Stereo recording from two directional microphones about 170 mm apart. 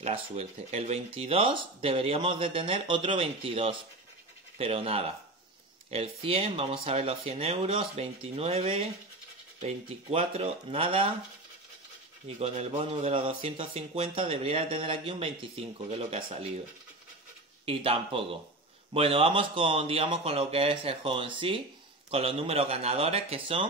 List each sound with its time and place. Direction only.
0.0 s speech: 40° right (ahead or behind)
12.4 s speech: 35° right (ahead or behind)
17.6 s speech: 35° right (ahead or behind)